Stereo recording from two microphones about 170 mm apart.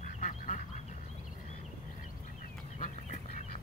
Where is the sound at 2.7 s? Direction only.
45° left (ahead or behind).